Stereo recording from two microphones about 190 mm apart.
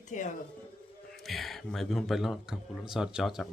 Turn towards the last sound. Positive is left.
turn(degrees=0)  # may be behind; listen again after turning